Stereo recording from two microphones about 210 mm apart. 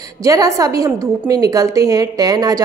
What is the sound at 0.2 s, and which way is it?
A woman's voice, 15° right (ahead or behind).